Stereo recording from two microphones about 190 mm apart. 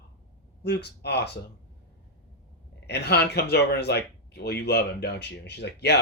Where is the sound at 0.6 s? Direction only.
60° left (ahead or behind).